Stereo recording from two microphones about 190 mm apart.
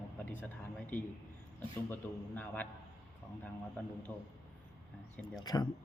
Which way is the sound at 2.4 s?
10° left (ahead or behind).